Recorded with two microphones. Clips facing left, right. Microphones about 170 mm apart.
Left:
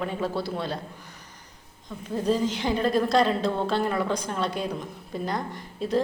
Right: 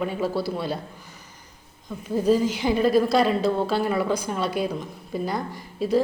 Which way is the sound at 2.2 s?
5° right (ahead or behind).